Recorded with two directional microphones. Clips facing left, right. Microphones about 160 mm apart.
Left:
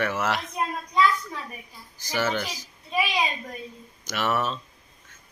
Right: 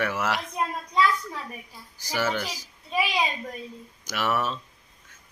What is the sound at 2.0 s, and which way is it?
Speech, 10° right (ahead or behind).